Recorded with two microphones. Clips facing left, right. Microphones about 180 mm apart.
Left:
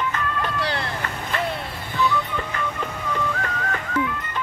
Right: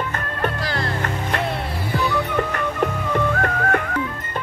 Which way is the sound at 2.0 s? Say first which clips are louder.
Right 1 dB; 70° right (ahead or behind).